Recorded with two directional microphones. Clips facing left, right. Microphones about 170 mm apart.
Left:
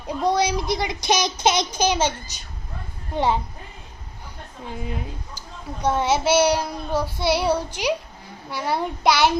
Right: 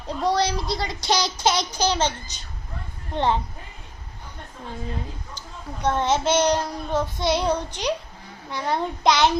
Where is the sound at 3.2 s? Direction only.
10° left (ahead or behind).